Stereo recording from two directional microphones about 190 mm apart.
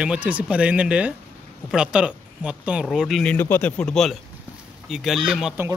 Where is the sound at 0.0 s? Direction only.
5° right (ahead or behind).